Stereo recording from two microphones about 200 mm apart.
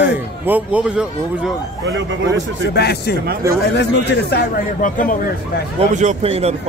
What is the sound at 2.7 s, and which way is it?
Speech, 55° left (ahead or behind).